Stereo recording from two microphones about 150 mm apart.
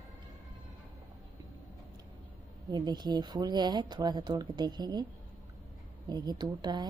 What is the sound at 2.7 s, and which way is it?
Speech, 30° right (ahead or behind).